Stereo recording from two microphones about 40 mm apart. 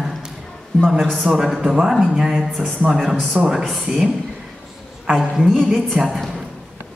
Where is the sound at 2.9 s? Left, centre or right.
Centre.